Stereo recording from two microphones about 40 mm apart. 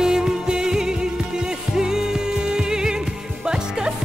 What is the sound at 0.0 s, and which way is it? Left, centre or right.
Music, centre.